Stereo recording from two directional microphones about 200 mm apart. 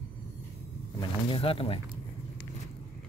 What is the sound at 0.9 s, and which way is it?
Speech, 25° left (ahead or behind).